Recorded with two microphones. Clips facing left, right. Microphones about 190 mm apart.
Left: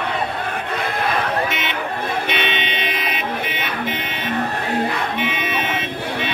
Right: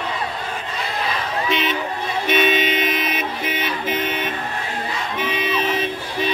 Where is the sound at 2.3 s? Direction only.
45° right (ahead or behind).